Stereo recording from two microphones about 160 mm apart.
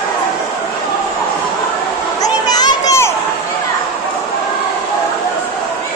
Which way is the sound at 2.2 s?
25° left (ahead or behind).